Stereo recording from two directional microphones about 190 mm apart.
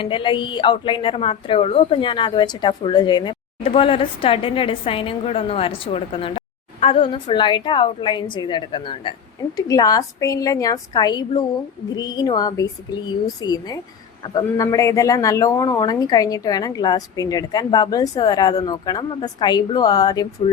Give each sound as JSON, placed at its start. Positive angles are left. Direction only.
{"t": 0.0, "sound": "a woman's voice", "side_deg": 25}